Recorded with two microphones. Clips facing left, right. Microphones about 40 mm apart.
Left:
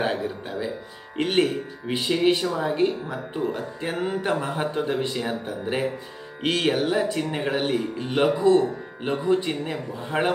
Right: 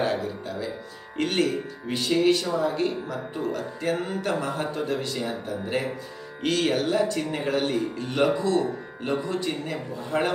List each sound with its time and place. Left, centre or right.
0.0 s speech: left